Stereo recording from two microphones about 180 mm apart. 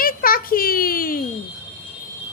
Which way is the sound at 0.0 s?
55° left (ahead or behind).